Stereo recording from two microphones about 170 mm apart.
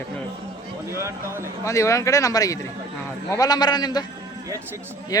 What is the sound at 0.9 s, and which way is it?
Speech, 15° right (ahead or behind).